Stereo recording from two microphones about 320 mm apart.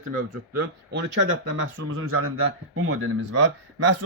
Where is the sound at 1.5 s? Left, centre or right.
Right.